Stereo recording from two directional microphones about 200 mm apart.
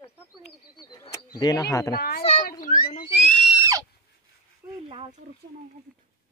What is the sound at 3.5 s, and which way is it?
Screaming, 15° right (ahead or behind).